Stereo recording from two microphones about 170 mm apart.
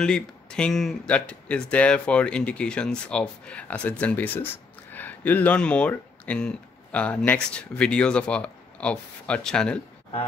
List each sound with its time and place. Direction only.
0.0 s speech: 5° left (ahead or behind)